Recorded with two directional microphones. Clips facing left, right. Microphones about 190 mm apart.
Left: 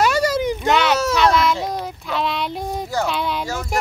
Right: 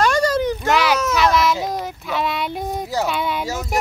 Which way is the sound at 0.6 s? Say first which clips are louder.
Even; centre (ahead or behind).